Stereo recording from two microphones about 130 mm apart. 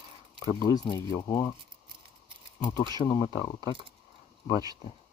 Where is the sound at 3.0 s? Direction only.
25° left (ahead or behind).